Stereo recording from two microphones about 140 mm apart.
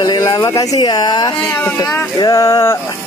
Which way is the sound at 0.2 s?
20° left (ahead or behind).